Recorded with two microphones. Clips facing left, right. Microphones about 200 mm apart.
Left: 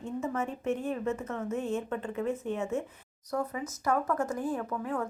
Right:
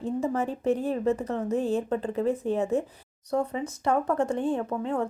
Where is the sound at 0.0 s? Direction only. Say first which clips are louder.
Right 5 dB; 35° right (ahead or behind).